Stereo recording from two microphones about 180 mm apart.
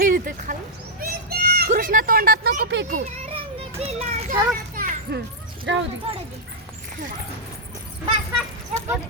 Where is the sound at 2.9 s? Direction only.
40° right (ahead or behind).